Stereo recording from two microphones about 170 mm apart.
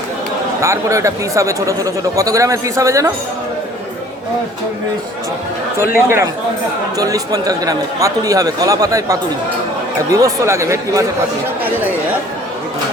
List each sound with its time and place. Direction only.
0.6 s speech: 15° right (ahead or behind)
6.1 s speech: 15° right (ahead or behind)